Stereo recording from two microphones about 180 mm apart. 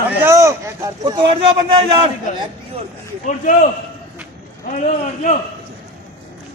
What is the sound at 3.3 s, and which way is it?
Speech, 45° left (ahead or behind).